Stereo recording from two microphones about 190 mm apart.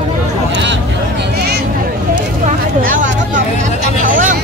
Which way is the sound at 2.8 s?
45° right (ahead or behind).